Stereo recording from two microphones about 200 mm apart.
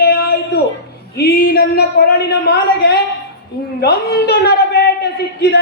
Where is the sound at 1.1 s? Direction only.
55° left (ahead or behind).